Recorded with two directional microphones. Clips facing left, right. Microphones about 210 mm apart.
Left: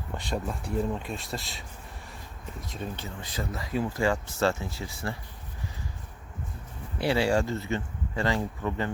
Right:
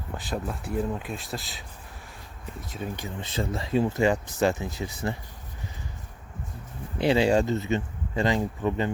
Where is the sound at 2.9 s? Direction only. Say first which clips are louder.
Right 4 dB; 20° right (ahead or behind).